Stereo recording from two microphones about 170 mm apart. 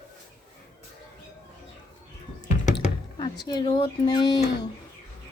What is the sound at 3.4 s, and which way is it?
Speech, 25° left (ahead or behind).